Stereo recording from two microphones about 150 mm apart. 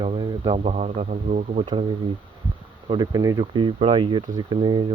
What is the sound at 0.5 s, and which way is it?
Speech, 50° right (ahead or behind).